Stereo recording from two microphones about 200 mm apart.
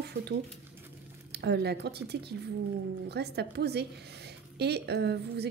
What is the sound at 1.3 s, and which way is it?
A woman's voice, 55° right (ahead or behind).